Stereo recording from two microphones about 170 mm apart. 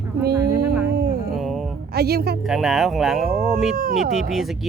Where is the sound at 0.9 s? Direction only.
70° right (ahead or behind).